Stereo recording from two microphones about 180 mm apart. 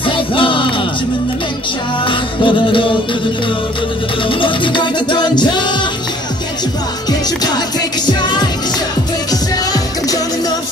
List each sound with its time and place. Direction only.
0.0 s music: 30° left (ahead or behind)
2.0 s music: 25° left (ahead or behind)
4.2 s music: 30° left (ahead or behind)
7.1 s music: 20° left (ahead or behind)